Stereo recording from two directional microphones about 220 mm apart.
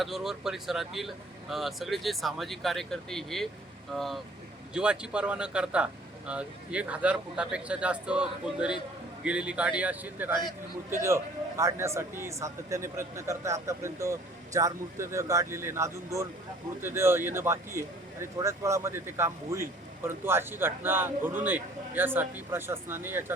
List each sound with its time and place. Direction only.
0.0 s a man's voice: centre (ahead or behind)